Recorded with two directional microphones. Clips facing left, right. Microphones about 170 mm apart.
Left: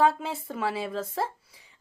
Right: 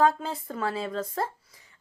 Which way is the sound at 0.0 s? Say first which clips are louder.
Even; 5° left (ahead or behind).